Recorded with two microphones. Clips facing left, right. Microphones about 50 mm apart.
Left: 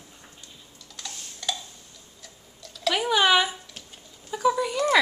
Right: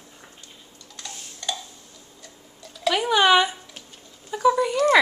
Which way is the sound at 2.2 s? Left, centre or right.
Centre.